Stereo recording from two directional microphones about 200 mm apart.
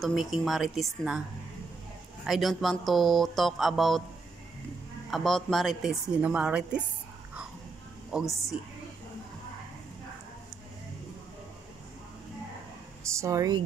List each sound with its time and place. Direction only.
0.0 s speech: centre (ahead or behind)
2.2 s speech: centre (ahead or behind)
5.1 s speech: centre (ahead or behind)
8.1 s speech: centre (ahead or behind)
13.0 s speech: 15° right (ahead or behind)